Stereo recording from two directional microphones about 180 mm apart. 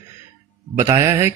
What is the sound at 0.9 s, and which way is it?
Speech, 15° right (ahead or behind).